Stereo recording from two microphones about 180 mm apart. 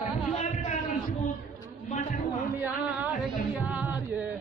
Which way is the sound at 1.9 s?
45° left (ahead or behind).